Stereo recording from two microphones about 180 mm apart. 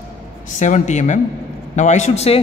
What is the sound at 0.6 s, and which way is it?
A man's voice, 40° left (ahead or behind).